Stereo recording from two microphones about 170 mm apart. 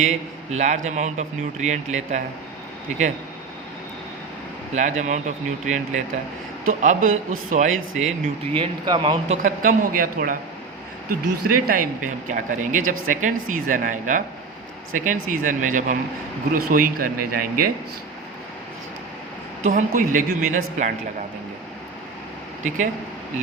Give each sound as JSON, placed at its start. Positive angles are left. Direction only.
{"t": 0.0, "sound": "speech", "side_deg": -45}
{"t": 4.7, "sound": "speech", "side_deg": -45}
{"t": 8.5, "sound": "speech", "side_deg": -30}
{"t": 9.4, "sound": "speech", "side_deg": -50}
{"t": 19.6, "sound": "speech", "side_deg": -50}